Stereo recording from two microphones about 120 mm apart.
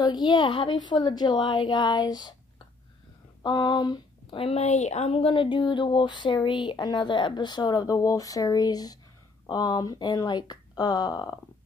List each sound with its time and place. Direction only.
0.0 s speech: 35° left (ahead or behind)
3.4 s speech: 35° left (ahead or behind)
4.4 s speech: 60° left (ahead or behind); by 11.3 s 35° left (ahead or behind)